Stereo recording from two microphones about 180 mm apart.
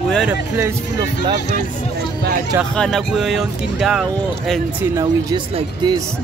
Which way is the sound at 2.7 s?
5° left (ahead or behind).